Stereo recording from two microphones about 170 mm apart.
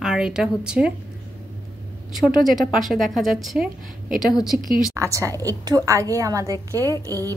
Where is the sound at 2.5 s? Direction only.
Centre (ahead or behind).